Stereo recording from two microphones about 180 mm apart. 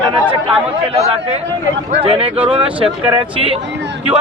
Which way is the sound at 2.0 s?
30° right (ahead or behind).